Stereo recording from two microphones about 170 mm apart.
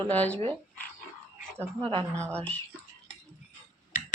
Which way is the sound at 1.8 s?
30° right (ahead or behind).